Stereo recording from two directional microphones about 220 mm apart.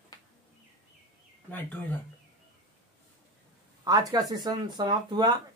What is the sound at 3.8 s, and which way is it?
Speech, 20° right (ahead or behind).